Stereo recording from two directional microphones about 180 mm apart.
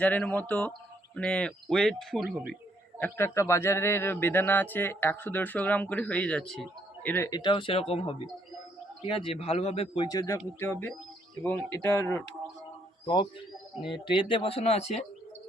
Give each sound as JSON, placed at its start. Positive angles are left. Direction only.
{"t": 0.0, "sound": "speech", "side_deg": 10}
{"t": 3.0, "sound": "a man's voice", "side_deg": 15}
{"t": 13.8, "sound": "speech", "side_deg": 25}